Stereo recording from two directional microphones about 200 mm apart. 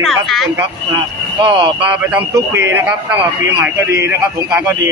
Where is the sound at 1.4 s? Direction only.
25° right (ahead or behind).